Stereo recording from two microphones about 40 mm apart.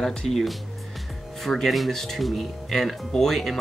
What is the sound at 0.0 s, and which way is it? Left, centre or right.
Speech, centre.